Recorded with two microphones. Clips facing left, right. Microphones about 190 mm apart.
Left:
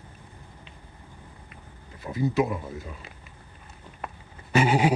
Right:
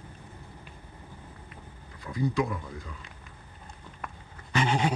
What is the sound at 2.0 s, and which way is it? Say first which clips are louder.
Speech: left 4 dB; 20° left (ahead or behind).